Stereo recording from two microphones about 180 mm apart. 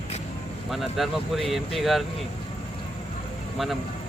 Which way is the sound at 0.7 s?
Centre (ahead or behind).